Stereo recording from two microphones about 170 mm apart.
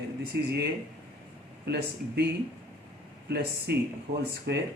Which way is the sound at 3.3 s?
75° right (ahead or behind).